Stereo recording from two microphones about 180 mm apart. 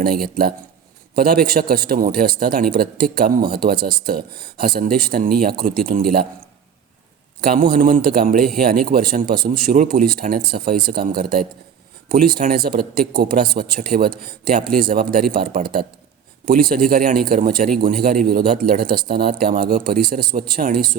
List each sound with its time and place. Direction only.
0.0 s a man's voice: 55° right (ahead or behind)
7.4 s a man's voice: 50° right (ahead or behind)